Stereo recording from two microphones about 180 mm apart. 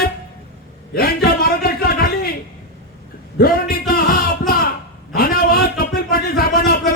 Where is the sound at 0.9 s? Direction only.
60° left (ahead or behind).